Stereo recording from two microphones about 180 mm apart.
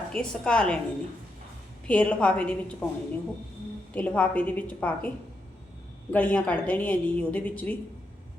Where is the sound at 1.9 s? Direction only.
5° left (ahead or behind).